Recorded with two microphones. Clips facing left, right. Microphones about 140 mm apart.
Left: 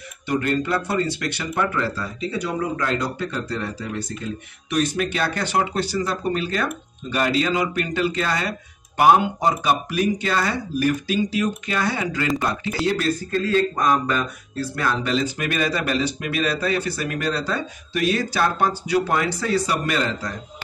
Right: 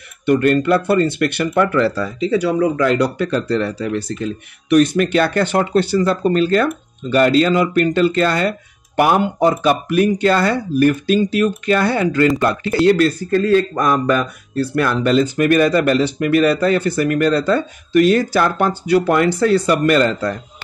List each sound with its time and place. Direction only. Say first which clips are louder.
0.3 s speech: right 8 dB; 60° right (ahead or behind)